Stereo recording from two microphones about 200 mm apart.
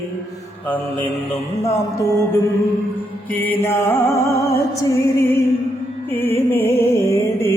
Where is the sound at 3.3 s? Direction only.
10° left (ahead or behind).